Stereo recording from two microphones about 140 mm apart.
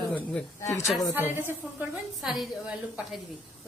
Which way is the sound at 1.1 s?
15° right (ahead or behind).